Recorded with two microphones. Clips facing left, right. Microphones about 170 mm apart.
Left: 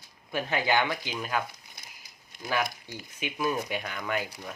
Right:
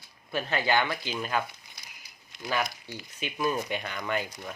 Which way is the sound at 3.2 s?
10° left (ahead or behind).